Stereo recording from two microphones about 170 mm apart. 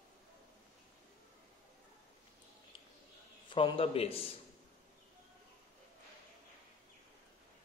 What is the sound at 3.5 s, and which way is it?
Speech, 30° left (ahead or behind).